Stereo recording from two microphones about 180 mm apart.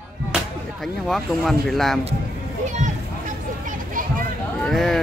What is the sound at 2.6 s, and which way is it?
Speech, 40° right (ahead or behind).